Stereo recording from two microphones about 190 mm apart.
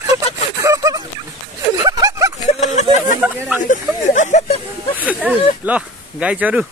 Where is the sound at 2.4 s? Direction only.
35° left (ahead or behind).